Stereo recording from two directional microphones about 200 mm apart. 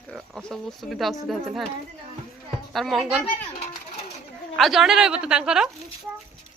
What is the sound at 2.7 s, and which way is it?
Speech, centre (ahead or behind).